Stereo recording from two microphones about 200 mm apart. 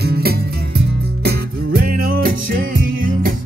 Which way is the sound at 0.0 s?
50° right (ahead or behind).